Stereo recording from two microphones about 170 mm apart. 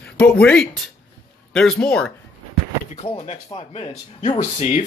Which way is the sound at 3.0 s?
35° left (ahead or behind).